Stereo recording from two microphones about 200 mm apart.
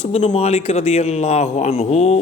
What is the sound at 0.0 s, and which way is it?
Speech, 35° left (ahead or behind).